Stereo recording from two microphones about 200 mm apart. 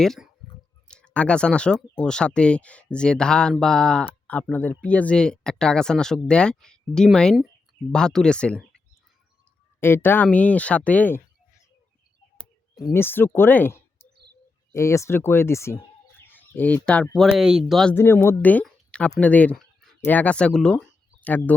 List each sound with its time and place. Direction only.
0.0 s speech: centre (ahead or behind)
9.8 s speech: 10° left (ahead or behind)
12.9 s speech: 10° left (ahead or behind)
17.9 s speech: 10° left (ahead or behind)